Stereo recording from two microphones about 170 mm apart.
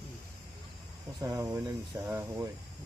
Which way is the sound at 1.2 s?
20° right (ahead or behind).